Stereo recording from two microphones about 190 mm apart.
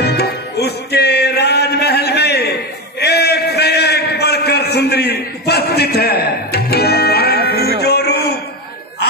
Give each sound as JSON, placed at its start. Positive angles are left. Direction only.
{"t": 0.0, "sound": "music", "side_deg": 60}